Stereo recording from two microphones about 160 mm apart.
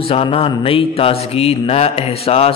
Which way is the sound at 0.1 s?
35° left (ahead or behind).